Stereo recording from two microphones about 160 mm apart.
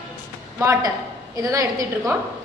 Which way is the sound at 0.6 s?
20° right (ahead or behind).